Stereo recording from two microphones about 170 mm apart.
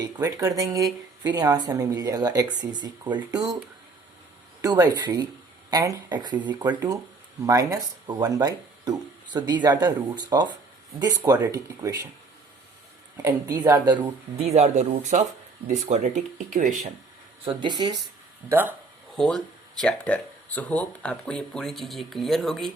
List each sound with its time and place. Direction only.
0.0 s speech: 20° right (ahead or behind)
4.6 s speech: 20° right (ahead or behind)
13.2 s speech: 15° right (ahead or behind)
14.4 s speech: 40° right (ahead or behind)
17.4 s speech: 30° right (ahead or behind)
18.4 s speech: 10° right (ahead or behind)
19.1 s speech: 5° left (ahead or behind)